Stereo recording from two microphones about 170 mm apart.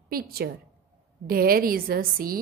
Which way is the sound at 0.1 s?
60° right (ahead or behind).